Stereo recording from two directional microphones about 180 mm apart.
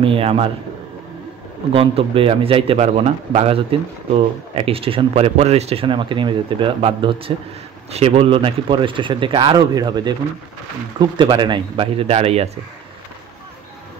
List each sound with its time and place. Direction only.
0.0 s speech: 30° right (ahead or behind)
1.7 s speech: 30° right (ahead or behind)